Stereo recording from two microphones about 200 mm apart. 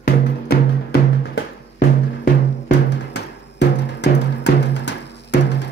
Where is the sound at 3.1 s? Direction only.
60° left (ahead or behind).